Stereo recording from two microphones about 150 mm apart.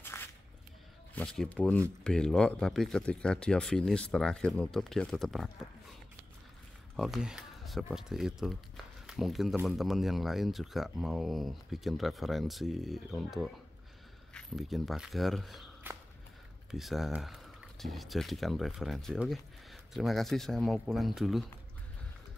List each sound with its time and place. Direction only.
0.0 s a sound: 15° left (ahead or behind)
1.1 s speech: 5° left (ahead or behind)
7.0 s speech: centre (ahead or behind)
15.8 s walk: 15° right (ahead or behind)
16.7 s speech: centre (ahead or behind)